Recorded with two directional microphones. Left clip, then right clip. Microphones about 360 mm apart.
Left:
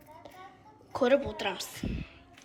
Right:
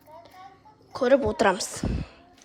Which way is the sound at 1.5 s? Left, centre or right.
Centre.